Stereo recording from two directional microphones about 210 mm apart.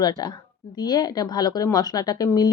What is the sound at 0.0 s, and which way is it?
A woman's voice, 20° left (ahead or behind).